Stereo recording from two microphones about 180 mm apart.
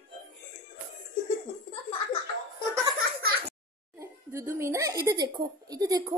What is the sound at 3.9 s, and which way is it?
A child's voice, 15° right (ahead or behind).